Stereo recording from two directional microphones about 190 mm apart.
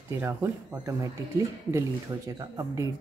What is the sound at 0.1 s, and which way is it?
Speech, 15° right (ahead or behind).